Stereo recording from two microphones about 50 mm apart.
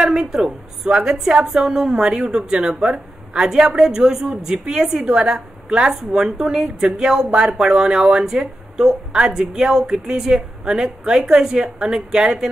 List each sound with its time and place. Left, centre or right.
0.0 s speech: centre